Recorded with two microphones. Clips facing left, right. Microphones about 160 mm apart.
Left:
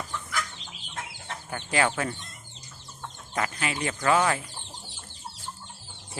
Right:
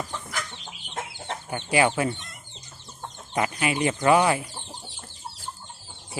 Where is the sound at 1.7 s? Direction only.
10° right (ahead or behind).